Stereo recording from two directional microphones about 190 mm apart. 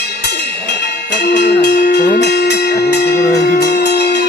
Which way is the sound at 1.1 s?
65° left (ahead or behind).